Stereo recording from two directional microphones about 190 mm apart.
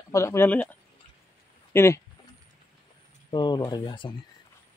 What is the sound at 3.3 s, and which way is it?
Speech, 25° left (ahead or behind).